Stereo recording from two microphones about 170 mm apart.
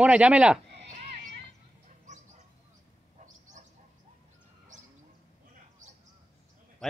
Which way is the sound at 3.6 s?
45° right (ahead or behind).